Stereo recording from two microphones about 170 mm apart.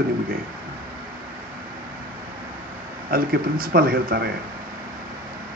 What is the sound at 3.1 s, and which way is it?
A man's voice, 60° right (ahead or behind).